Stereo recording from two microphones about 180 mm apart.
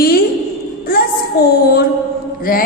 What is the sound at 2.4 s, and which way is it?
Speech, 55° left (ahead or behind).